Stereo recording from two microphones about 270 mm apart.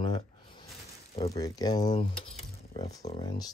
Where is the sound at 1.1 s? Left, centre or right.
Centre.